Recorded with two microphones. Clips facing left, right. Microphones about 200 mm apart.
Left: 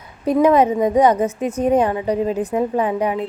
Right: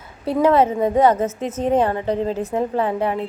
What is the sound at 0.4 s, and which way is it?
A woman's voice, 15° left (ahead or behind).